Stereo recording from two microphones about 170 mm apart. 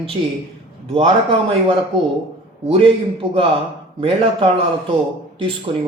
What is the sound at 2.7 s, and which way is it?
A man's voice, 30° right (ahead or behind).